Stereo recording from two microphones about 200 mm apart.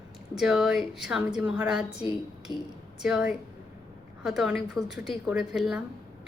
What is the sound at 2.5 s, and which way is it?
Speech, 20° left (ahead or behind).